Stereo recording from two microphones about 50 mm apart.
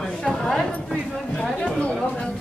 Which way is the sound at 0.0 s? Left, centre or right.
Centre.